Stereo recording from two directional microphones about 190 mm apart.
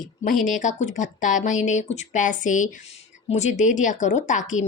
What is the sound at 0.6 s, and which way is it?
Speech, 40° left (ahead or behind).